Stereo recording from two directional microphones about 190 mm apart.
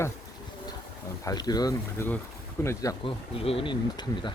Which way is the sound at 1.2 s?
20° left (ahead or behind).